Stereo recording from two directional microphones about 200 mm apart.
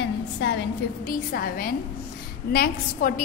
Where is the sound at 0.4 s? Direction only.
60° left (ahead or behind).